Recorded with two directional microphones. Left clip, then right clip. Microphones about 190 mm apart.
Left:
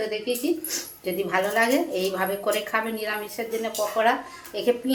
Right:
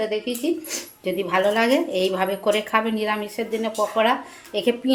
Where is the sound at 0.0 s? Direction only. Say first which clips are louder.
Right 2 dB; 40° right (ahead or behind).